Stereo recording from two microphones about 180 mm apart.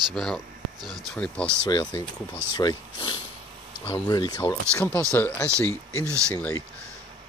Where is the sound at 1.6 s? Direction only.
20° left (ahead or behind).